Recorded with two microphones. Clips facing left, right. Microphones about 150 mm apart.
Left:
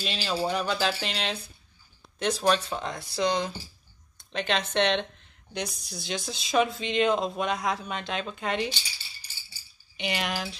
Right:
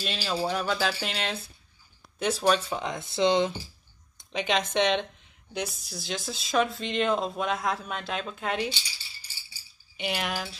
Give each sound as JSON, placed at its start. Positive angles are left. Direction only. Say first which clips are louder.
{"t": 0.0, "sound": "speech", "louder": "even", "side_deg": 0}
{"t": 2.9, "sound": "speech", "louder": "right 4 dB", "side_deg": -20}
{"t": 4.2, "sound": "speech", "louder": "right 1 dB", "side_deg": -10}
{"t": 9.9, "sound": "speech", "louder": "even", "side_deg": -5}